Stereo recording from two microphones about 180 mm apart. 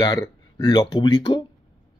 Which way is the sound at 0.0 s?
20° left (ahead or behind).